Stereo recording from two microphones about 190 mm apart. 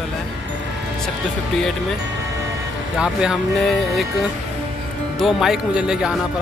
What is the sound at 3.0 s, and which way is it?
Speech, 5° right (ahead or behind).